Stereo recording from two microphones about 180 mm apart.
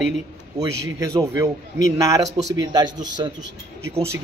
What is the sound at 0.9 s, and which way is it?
A man's voice, 20° right (ahead or behind).